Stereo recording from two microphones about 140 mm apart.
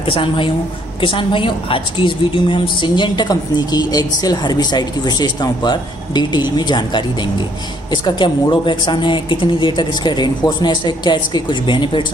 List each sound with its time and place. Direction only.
0.0 s a woman's voice: 40° left (ahead or behind)